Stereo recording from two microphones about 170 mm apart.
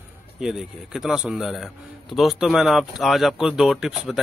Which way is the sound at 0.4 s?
5° right (ahead or behind).